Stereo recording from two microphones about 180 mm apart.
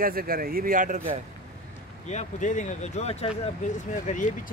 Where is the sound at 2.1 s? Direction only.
40° left (ahead or behind).